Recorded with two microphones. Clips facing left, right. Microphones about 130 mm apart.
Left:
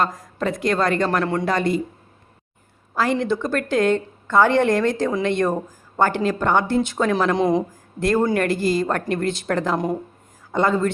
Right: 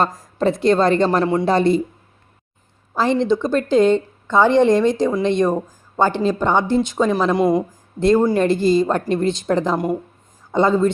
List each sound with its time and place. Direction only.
0.0 s a woman's voice: 30° right (ahead or behind)
1.2 s speech: 15° right (ahead or behind)
1.5 s speech: 30° right (ahead or behind)
2.9 s a woman's voice: 25° right (ahead or behind); by 7.6 s 5° right (ahead or behind)
7.9 s a woman's voice: 20° right (ahead or behind)
9.7 s speech: 5° right (ahead or behind)
10.5 s a woman's voice: 20° right (ahead or behind)